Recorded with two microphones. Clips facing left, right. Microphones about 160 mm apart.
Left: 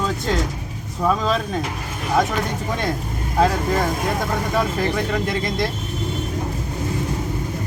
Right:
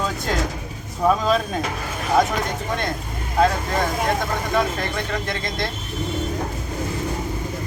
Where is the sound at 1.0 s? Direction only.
5° right (ahead or behind).